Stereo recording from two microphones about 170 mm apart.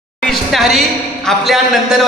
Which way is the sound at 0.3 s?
Centre (ahead or behind).